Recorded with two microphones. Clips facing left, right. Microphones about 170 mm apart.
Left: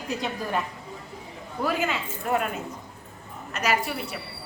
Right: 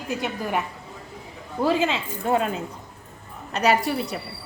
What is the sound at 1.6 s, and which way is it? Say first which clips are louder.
Speech: right 5 dB; 25° right (ahead or behind).